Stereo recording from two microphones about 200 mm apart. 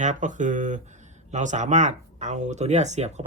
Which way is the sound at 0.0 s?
40° right (ahead or behind).